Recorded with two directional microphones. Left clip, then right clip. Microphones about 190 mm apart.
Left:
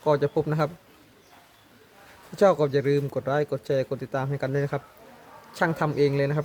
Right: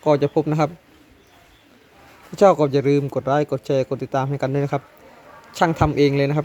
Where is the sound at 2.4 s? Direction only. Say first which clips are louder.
Right 5 dB; 15° right (ahead or behind).